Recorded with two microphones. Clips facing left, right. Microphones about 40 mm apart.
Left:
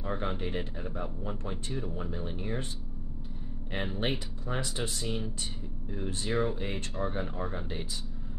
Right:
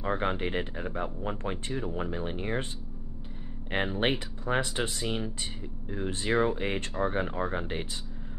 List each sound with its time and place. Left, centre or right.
0.0 s speech: right
3.7 s speech: right